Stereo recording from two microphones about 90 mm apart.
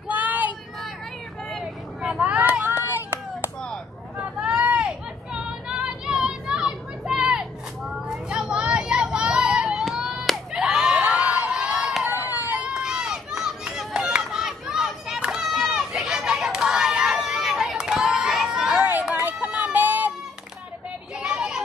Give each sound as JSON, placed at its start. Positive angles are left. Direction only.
{"t": 0.1, "sound": "child singing", "side_deg": -20}
{"t": 1.5, "sound": "vehicle", "side_deg": -5}
{"t": 4.2, "sound": "vehicle", "side_deg": -10}
{"t": 12.0, "sound": "a sound", "side_deg": -20}
{"t": 12.7, "sound": "run", "side_deg": -5}
{"t": 18.1, "sound": "crowd", "side_deg": -5}
{"t": 18.9, "sound": "run", "side_deg": -15}
{"t": 21.2, "sound": "a sound", "side_deg": -5}